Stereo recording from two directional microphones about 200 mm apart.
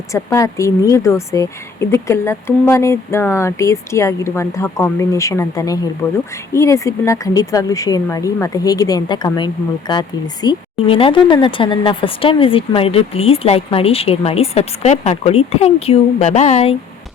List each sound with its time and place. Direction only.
0.1 s speech: 15° left (ahead or behind); by 16.7 s 35° left (ahead or behind)